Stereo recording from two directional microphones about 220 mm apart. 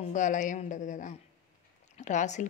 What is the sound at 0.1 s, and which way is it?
Speech, 35° left (ahead or behind).